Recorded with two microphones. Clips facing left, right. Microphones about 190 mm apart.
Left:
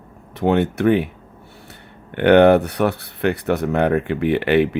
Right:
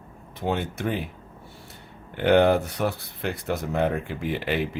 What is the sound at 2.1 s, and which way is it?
Speech, 65° left (ahead or behind).